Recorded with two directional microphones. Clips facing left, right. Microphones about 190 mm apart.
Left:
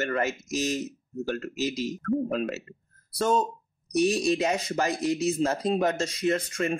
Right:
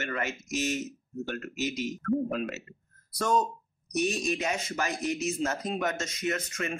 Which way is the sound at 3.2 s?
25° left (ahead or behind).